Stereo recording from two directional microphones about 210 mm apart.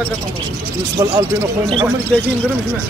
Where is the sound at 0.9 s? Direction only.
20° right (ahead or behind).